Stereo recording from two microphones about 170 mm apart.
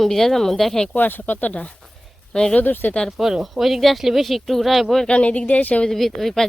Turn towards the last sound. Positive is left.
turn(degrees=0)  # may be behind; listen again after turning